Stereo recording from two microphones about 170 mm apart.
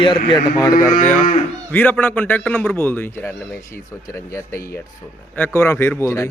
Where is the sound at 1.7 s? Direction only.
10° left (ahead or behind).